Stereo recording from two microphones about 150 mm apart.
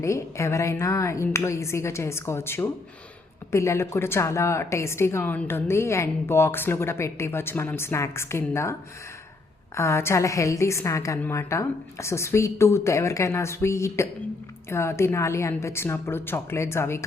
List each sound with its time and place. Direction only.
0.0 s a woman's voice: 20° left (ahead or behind)
9.7 s a woman's voice: 20° left (ahead or behind)